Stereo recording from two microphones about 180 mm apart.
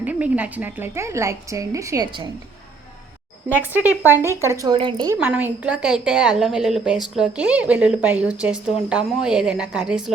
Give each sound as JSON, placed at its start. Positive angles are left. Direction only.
{"t": 0.0, "sound": "a woman's voice", "side_deg": -10}
{"t": 3.6, "sound": "a woman's voice", "side_deg": -10}
{"t": 5.2, "sound": "a woman's voice", "side_deg": -10}